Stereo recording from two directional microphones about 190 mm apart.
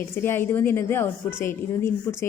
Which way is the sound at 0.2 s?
10° left (ahead or behind).